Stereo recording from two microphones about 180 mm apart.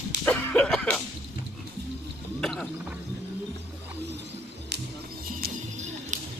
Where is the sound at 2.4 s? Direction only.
Centre (ahead or behind).